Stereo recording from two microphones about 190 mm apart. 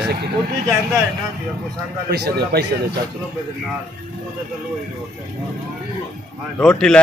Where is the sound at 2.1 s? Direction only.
55° right (ahead or behind).